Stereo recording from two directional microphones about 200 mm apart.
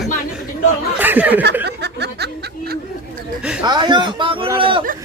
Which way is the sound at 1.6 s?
55° right (ahead or behind).